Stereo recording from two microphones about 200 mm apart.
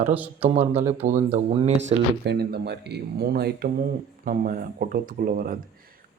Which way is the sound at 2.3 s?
55° right (ahead or behind).